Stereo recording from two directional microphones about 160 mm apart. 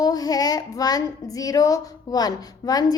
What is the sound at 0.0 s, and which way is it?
A woman's voice, 25° left (ahead or behind).